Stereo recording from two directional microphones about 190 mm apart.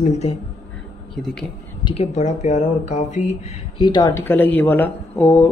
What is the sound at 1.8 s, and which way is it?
Speech, 35° left (ahead or behind).